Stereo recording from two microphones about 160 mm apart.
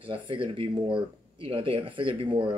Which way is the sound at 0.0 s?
35° right (ahead or behind).